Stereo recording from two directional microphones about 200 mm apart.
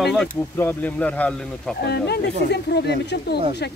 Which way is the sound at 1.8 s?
55° left (ahead or behind).